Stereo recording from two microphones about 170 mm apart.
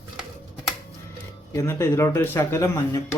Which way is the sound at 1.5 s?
15° left (ahead or behind).